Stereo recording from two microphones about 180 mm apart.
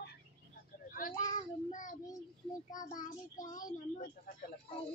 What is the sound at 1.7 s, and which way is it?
Child singing, 45° left (ahead or behind).